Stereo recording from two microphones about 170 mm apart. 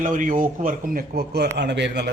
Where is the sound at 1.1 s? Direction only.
70° right (ahead or behind).